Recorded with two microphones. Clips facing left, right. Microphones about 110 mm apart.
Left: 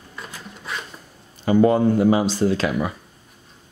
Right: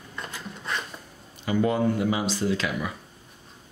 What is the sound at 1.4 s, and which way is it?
Speech, 40° left (ahead or behind).